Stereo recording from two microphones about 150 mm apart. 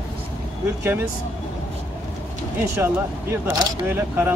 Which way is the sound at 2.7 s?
20° right (ahead or behind).